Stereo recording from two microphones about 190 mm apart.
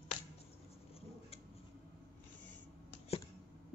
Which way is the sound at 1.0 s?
30° left (ahead or behind).